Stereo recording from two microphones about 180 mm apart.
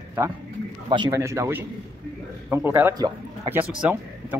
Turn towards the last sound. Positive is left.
turn(degrees=-10)  # may be behind; listen again after turning